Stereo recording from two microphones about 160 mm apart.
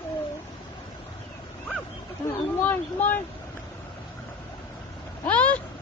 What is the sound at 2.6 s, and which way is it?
Speech, 10° left (ahead or behind).